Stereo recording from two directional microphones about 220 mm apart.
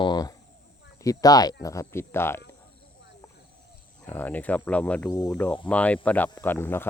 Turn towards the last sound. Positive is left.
turn(degrees=10)  # may be behind; listen again after turning